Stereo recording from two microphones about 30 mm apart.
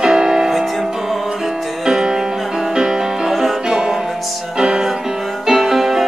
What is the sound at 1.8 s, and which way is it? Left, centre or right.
Music, centre.